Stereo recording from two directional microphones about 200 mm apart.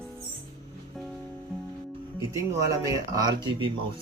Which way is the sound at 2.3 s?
15° right (ahead or behind).